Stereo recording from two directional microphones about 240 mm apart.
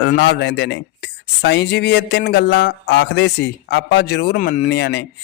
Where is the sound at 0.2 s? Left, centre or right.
Left.